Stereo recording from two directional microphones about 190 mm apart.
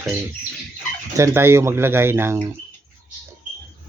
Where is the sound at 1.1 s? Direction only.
15° right (ahead or behind).